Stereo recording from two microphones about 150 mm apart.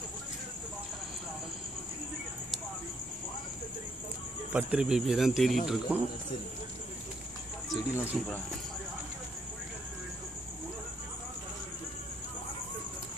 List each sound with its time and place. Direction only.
4.5 s speech: 10° right (ahead or behind)
7.7 s speech: 20° left (ahead or behind)